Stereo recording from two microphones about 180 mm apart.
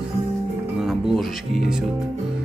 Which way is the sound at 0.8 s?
Centre (ahead or behind).